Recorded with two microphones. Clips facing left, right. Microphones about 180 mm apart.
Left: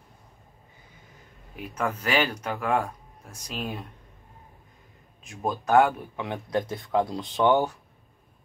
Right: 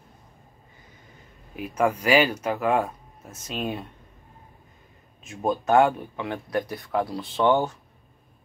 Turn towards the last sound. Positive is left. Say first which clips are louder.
# even
turn(degrees=15)  # may be behind; listen again after turning